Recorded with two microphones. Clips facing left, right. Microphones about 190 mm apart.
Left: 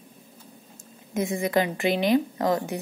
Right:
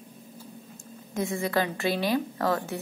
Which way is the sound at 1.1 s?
15° left (ahead or behind).